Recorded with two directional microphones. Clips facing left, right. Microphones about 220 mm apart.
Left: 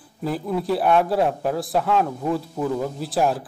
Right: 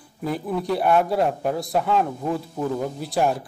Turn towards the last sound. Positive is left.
turn(degrees=0)  # may be behind; listen again after turning